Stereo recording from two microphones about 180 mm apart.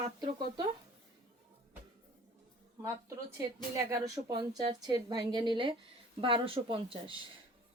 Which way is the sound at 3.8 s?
20° right (ahead or behind).